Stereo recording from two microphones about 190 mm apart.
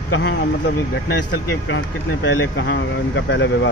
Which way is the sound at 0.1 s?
60° left (ahead or behind).